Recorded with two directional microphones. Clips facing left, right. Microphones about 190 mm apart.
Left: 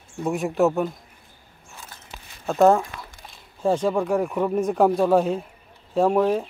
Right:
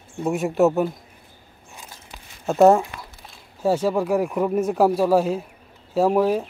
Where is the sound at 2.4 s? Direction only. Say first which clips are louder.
Right 2 dB; 5° right (ahead or behind).